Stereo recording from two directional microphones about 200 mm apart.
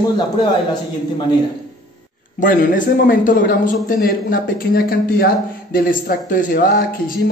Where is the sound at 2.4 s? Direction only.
40° left (ahead or behind).